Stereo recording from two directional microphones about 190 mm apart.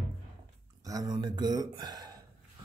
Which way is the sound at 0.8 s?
20° right (ahead or behind).